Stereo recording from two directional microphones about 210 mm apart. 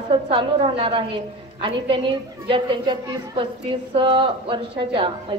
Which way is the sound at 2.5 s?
25° right (ahead or behind).